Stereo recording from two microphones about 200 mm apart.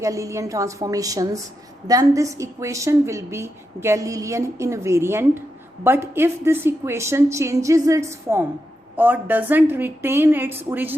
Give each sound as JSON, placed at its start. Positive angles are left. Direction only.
{"t": 0.0, "sound": "a woman's voice", "side_deg": -15}